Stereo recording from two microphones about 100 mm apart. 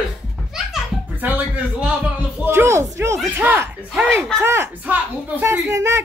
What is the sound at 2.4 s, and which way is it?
Speech, 25° right (ahead or behind).